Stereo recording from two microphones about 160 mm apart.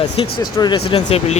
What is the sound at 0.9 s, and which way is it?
Speech, 40° left (ahead or behind).